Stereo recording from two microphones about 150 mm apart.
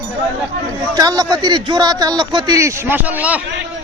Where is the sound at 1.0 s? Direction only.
25° right (ahead or behind); by 3.4 s 10° right (ahead or behind).